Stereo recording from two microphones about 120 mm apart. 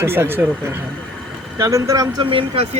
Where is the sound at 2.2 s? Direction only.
50° right (ahead or behind).